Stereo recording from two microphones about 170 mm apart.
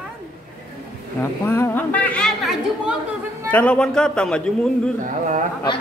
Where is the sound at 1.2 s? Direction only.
15° left (ahead or behind).